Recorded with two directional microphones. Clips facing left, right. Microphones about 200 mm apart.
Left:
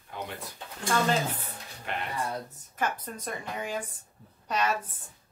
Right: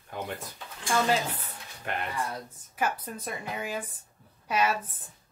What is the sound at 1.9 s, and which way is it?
Speech, 45° right (ahead or behind).